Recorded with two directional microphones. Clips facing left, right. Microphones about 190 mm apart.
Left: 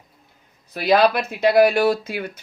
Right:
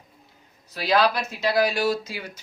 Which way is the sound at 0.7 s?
55° left (ahead or behind).